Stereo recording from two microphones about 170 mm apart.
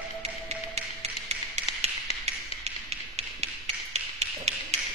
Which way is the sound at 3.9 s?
40° right (ahead or behind).